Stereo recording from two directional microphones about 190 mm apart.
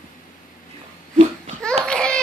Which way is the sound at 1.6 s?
5° left (ahead or behind).